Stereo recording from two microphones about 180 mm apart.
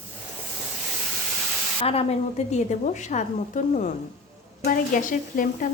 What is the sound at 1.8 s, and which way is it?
Speech, 35° left (ahead or behind).